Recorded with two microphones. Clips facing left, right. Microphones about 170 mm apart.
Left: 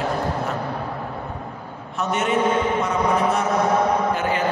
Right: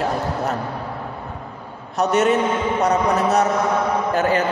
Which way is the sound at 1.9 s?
40° right (ahead or behind).